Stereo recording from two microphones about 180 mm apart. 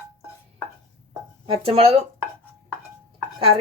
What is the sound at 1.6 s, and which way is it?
Dishes, 30° right (ahead or behind).